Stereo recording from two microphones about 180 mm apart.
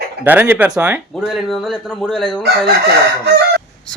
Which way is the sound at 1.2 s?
Centre (ahead or behind).